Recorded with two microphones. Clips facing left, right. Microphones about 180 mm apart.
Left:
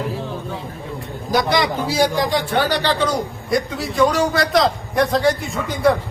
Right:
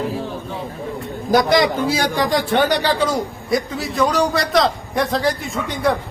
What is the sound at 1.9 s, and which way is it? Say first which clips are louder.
Speech: left 2 dB; 60° right (ahead or behind).